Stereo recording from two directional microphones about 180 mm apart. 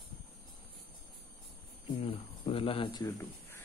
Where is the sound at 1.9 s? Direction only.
35° left (ahead or behind); by 3.5 s 15° left (ahead or behind).